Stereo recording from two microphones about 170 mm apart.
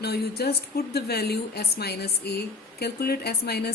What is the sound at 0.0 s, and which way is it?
A woman's voice, 70° left (ahead or behind).